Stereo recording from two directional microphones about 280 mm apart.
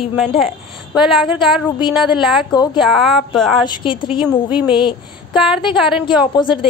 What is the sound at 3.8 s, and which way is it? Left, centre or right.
Speech, centre.